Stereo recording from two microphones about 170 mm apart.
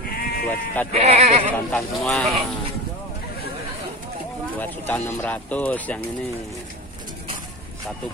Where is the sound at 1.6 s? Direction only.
5° left (ahead or behind).